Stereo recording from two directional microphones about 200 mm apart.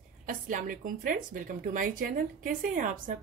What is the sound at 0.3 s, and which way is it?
A woman's voice, 40° right (ahead or behind).